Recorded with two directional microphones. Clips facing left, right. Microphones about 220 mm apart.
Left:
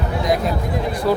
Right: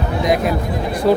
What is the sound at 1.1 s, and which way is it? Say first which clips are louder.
Speech: right 5 dB; 25° right (ahead or behind).